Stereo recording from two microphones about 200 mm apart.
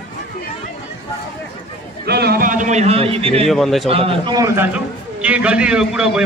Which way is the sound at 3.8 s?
30° right (ahead or behind).